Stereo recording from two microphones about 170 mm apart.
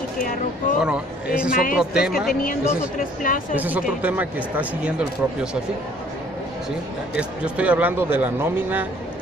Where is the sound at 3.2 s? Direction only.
50° left (ahead or behind).